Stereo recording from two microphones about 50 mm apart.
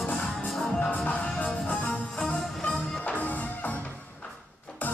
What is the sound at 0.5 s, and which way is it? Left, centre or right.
Music, centre.